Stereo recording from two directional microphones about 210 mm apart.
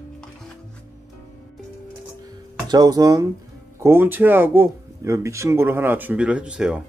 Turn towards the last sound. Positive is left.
turn(degrees=-5)  # may be behind; listen again after turning